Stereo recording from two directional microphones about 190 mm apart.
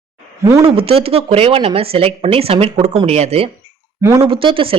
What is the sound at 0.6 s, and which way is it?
A woman's voice, 30° right (ahead or behind).